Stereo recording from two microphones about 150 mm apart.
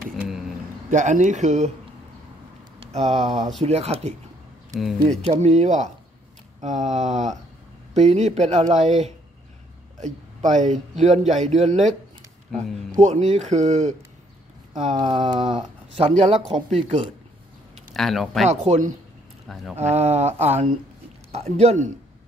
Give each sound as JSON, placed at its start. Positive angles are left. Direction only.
{"t": 0.8, "sound": "speech", "side_deg": -60}
{"t": 2.8, "sound": "a man's voice", "side_deg": -45}
{"t": 5.2, "sound": "a man's voice", "side_deg": -45}
{"t": 13.0, "sound": "a man's voice", "side_deg": -50}
{"t": 14.8, "sound": "a sound", "side_deg": -40}
{"t": 15.4, "sound": "a man's voice", "side_deg": -45}
{"t": 17.9, "sound": "speech", "side_deg": 0}
{"t": 18.5, "sound": "a man's voice", "side_deg": -45}
{"t": 19.4, "sound": "speech", "side_deg": 0}
{"t": 19.8, "sound": "a man's voice", "side_deg": -45}